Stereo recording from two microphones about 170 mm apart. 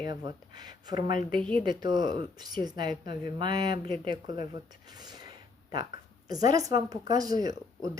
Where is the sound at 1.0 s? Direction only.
60° left (ahead or behind).